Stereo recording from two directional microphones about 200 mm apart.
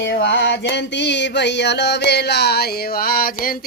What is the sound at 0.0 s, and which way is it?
Music, 60° left (ahead or behind).